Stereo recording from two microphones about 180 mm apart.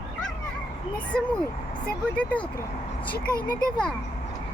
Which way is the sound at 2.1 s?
5° left (ahead or behind).